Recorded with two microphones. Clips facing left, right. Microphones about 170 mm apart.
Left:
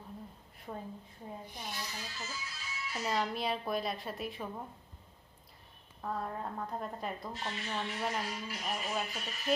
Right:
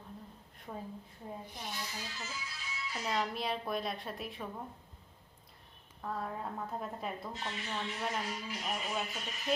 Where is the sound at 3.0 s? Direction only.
Centre (ahead or behind).